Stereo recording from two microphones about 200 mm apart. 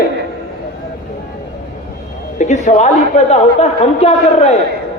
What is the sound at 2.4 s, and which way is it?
A man's voice, 35° left (ahead or behind).